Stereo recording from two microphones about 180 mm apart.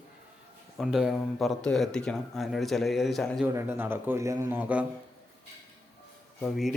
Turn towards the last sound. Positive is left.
turn(degrees=0)  # may be behind; listen again after turning